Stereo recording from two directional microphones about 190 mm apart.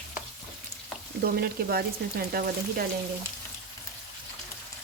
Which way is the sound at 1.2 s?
55° right (ahead or behind).